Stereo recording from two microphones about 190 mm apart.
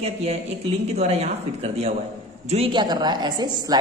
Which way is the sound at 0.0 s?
35° right (ahead or behind).